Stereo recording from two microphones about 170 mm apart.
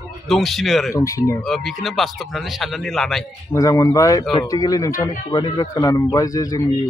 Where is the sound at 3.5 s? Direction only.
20° left (ahead or behind).